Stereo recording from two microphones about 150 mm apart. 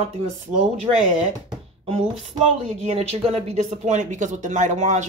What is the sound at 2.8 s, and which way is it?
Speech, 45° right (ahead or behind).